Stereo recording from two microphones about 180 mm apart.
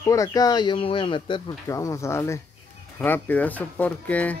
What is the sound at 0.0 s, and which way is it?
Speech, 20° left (ahead or behind).